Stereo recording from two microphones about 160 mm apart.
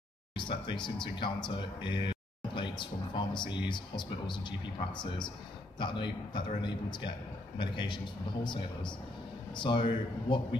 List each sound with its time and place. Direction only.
0.5 s speech: 30° left (ahead or behind)
9.5 s speech: 30° left (ahead or behind)